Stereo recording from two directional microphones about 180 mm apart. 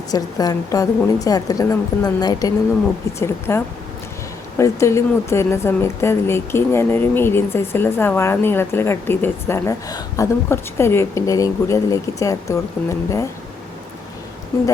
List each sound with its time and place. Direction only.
0.1 s a woman's voice: 20° left (ahead or behind)